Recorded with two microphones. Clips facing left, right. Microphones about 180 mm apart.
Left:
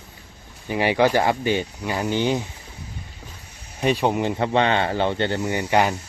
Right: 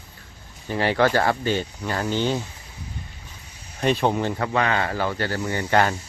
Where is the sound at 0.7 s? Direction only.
15° left (ahead or behind).